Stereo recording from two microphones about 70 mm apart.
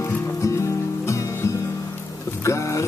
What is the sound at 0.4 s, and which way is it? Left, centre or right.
Music, left.